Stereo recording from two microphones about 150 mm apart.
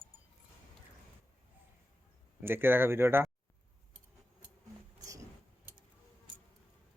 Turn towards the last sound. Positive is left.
turn(degrees=-20)  # may be behind; listen again after turning